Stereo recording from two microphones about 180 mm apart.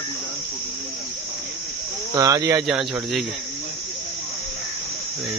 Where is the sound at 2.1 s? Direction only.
20° right (ahead or behind).